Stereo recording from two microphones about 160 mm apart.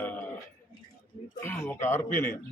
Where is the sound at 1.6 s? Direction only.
15° left (ahead or behind).